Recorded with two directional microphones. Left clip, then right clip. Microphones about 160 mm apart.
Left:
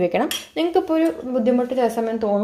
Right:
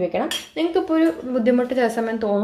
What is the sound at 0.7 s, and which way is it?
Speech, 20° left (ahead or behind).